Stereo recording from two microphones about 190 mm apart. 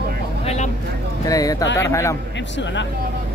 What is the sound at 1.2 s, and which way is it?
Speech, 20° left (ahead or behind).